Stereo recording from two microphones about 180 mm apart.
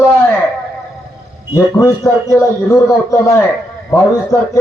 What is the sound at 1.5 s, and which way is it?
A man's voice, 20° left (ahead or behind).